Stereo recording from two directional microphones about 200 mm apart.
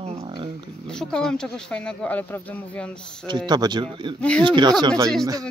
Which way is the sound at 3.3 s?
20° right (ahead or behind).